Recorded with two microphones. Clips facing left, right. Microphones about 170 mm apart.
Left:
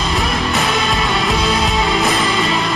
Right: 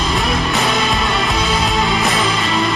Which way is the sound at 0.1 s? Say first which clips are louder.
Even; centre (ahead or behind).